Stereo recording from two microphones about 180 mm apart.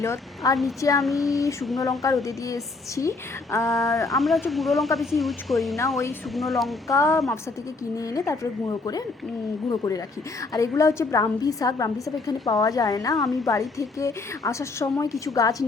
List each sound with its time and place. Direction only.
0.0 s a woman's voice: 15° left (ahead or behind)
1.0 s speech: centre (ahead or behind)
1.8 s a woman's voice: 20° left (ahead or behind)
4.1 s speech: centre (ahead or behind)
6.8 s a woman's voice: 15° left (ahead or behind)